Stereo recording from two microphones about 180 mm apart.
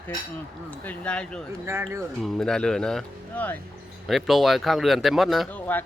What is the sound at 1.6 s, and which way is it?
Speech, 15° right (ahead or behind).